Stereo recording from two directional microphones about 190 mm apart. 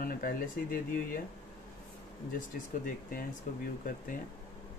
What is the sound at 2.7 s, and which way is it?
Speech, 45° left (ahead or behind).